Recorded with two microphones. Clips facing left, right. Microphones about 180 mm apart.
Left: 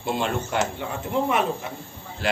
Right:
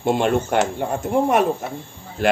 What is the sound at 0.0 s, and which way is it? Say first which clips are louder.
A man's voice: right 7 dB; 55° right (ahead or behind).